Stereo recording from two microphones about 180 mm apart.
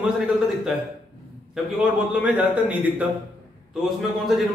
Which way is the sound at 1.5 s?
5° right (ahead or behind).